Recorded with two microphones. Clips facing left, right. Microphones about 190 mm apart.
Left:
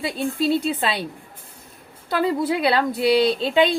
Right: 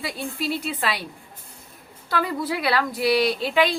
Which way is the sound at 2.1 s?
25° left (ahead or behind).